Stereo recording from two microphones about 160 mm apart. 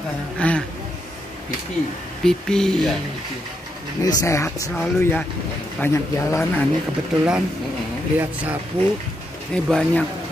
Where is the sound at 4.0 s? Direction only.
20° left (ahead or behind).